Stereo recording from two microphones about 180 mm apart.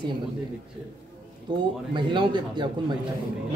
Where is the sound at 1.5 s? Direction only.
25° right (ahead or behind).